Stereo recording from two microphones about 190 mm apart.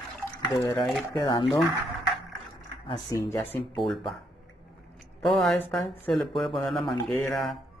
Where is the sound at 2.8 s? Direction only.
20° left (ahead or behind).